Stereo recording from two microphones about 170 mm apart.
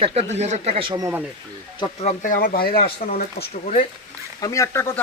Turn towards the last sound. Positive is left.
turn(degrees=15)  # may be behind; listen again after turning